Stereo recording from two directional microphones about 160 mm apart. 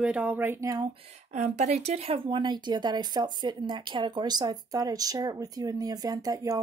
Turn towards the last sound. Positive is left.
turn(degrees=-20)  # may be behind; listen again after turning